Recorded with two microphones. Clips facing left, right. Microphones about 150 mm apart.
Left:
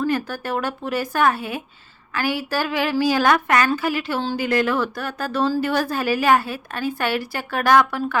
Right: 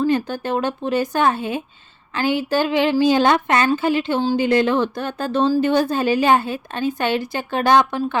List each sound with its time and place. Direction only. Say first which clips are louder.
0.0 s speech: right 3 dB; 20° right (ahead or behind)